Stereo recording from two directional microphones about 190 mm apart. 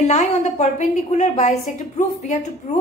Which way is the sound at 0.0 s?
40° left (ahead or behind).